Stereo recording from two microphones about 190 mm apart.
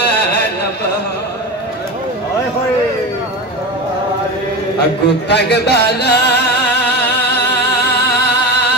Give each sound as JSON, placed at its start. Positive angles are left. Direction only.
{"t": 5.0, "sound": "speech", "side_deg": 60}
{"t": 6.9, "sound": "music", "side_deg": 60}